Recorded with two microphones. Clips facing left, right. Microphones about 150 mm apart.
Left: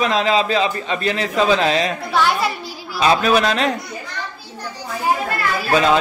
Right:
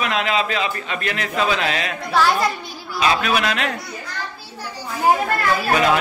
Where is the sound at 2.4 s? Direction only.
85° left.